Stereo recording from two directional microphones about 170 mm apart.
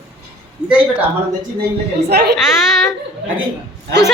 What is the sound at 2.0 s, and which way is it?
Speech, 70° right (ahead or behind).